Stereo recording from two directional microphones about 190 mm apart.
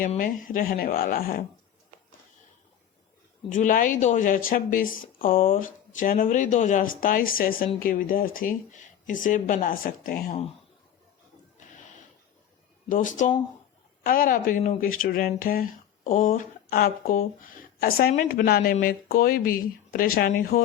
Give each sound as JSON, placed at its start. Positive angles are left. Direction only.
{"t": 0.0, "sound": "speech", "side_deg": 45}
{"t": 3.5, "sound": "speech", "side_deg": 45}
{"t": 12.9, "sound": "speech", "side_deg": 45}